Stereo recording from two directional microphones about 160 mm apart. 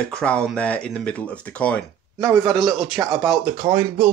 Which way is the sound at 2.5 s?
Centre (ahead or behind).